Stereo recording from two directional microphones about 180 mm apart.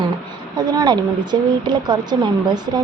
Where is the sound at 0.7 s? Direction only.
25° right (ahead or behind).